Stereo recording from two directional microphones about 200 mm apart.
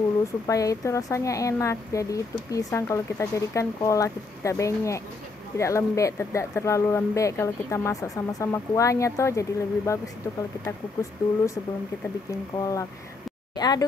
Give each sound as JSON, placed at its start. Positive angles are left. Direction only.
{"t": 0.5, "sound": "speech", "side_deg": 15}
{"t": 12.5, "sound": "speech", "side_deg": 15}